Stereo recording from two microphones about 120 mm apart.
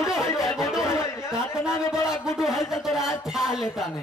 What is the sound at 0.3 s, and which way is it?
Music, 25° left (ahead or behind).